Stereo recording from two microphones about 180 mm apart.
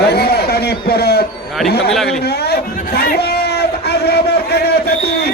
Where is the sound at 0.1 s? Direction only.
65° left (ahead or behind).